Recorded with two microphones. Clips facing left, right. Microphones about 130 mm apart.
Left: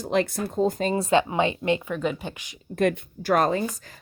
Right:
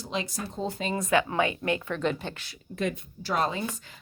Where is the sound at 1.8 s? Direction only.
10° left (ahead or behind).